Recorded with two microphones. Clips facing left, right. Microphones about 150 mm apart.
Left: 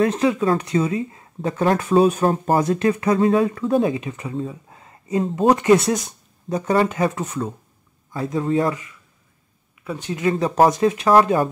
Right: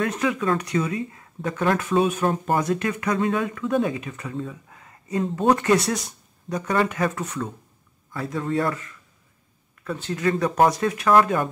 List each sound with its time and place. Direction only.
0.0 s speech: 30° left (ahead or behind)
9.9 s speech: 15° left (ahead or behind)